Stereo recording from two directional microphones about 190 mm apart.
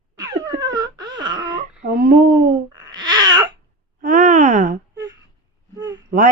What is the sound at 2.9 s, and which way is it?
Babbling, 20° right (ahead or behind).